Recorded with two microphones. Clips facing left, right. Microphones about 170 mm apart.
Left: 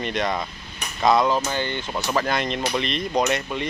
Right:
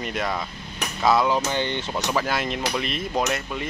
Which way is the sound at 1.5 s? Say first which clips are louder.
Right 1 dB; 20° right (ahead or behind).